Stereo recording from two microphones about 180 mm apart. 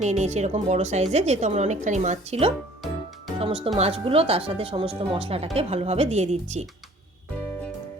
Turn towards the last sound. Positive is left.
turn(degrees=-40)  # may be behind; listen again after turning